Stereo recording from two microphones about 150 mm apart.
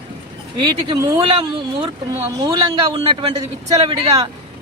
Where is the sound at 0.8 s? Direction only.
25° right (ahead or behind).